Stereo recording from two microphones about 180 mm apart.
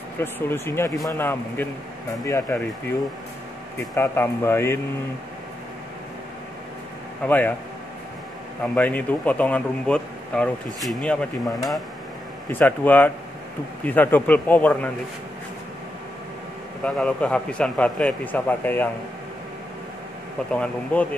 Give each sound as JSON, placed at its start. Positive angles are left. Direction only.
{"t": 0.2, "sound": "speech", "side_deg": 15}
{"t": 3.9, "sound": "speech", "side_deg": 15}
{"t": 7.2, "sound": "speech", "side_deg": 10}
{"t": 8.7, "sound": "speech", "side_deg": 10}
{"t": 12.4, "sound": "speech", "side_deg": 10}
{"t": 16.8, "sound": "speech", "side_deg": 5}
{"t": 20.5, "sound": "speech", "side_deg": 5}